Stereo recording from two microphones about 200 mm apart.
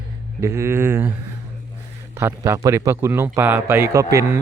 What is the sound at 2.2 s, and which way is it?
A man's voice, 10° right (ahead or behind).